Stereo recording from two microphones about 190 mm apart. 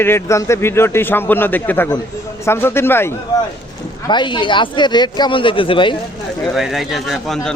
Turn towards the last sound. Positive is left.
turn(degrees=0)  # may be behind; listen again after turning